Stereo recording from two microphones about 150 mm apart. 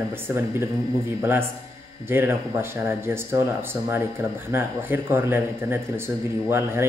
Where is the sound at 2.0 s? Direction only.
15° right (ahead or behind).